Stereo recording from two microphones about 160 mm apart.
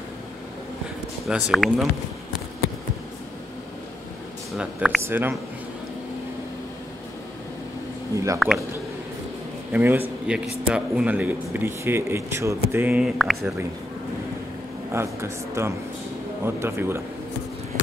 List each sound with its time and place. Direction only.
1.2 s speech: centre (ahead or behind)
4.6 s speech: 5° right (ahead or behind)
8.1 s speech: 20° right (ahead or behind)
8.4 s speech: centre (ahead or behind)
9.7 s a man's voice: 10° right (ahead or behind)
14.9 s speech: 15° right (ahead or behind)